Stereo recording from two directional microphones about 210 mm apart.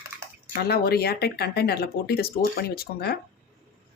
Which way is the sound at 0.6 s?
50° left (ahead or behind).